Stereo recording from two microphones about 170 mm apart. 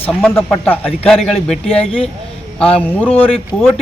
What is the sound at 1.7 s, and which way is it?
Speech, 35° left (ahead or behind).